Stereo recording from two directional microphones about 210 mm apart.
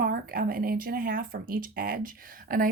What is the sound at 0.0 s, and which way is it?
Speech, 45° right (ahead or behind).